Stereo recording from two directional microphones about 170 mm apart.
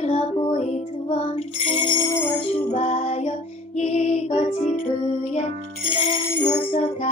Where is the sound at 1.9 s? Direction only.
25° left (ahead or behind).